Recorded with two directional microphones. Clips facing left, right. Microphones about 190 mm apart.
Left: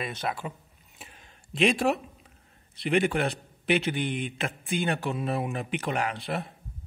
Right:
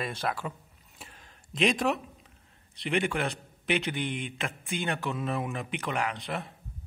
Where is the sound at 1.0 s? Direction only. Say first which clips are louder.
Even; 25° left (ahead or behind).